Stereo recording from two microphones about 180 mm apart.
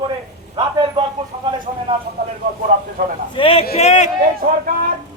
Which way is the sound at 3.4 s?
30° left (ahead or behind).